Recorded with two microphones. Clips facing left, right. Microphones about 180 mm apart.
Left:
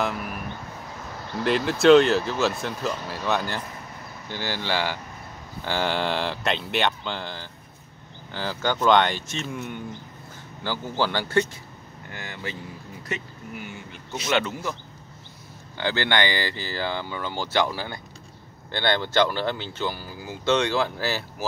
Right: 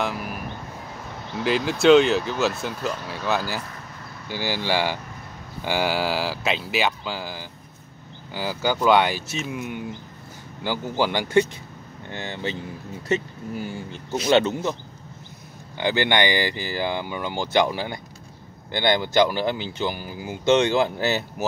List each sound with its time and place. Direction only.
0.0 s vehicle: centre (ahead or behind)
1.3 s speech: centre (ahead or behind)
12.1 s speech: 25° right (ahead or behind)
15.8 s speech: 15° right (ahead or behind)